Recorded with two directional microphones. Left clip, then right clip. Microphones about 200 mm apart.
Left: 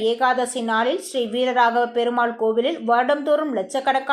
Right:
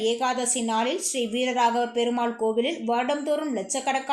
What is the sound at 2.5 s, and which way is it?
Speech, 45° left (ahead or behind).